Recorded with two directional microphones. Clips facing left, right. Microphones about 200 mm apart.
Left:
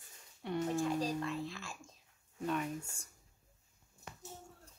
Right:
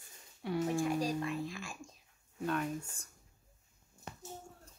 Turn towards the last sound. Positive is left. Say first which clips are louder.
# right 2 dB
turn(degrees=10)  # may be behind; listen again after turning